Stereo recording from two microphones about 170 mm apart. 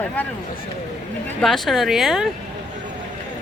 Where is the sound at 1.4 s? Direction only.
Centre (ahead or behind).